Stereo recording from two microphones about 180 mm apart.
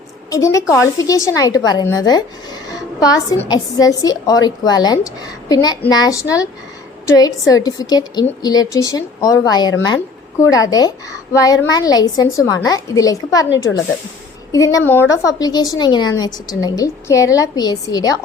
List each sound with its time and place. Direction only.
0.3 s a woman's voice: 20° left (ahead or behind)
14.5 s a woman's voice: 20° left (ahead or behind)